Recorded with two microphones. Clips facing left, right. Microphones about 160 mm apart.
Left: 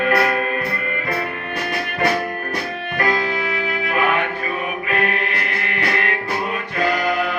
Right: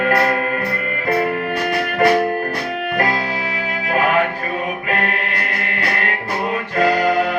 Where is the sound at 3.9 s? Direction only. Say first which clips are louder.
Right 4 dB; 35° right (ahead or behind).